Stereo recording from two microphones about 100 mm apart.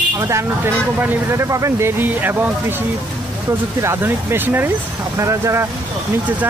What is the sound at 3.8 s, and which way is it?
Speech, 25° right (ahead or behind).